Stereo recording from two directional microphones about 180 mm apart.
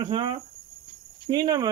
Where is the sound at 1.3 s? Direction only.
20° right (ahead or behind).